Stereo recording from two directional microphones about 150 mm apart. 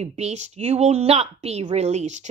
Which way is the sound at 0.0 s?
50° right (ahead or behind).